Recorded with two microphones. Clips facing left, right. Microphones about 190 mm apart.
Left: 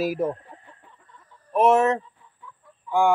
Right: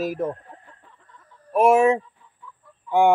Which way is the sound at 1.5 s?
10° right (ahead or behind).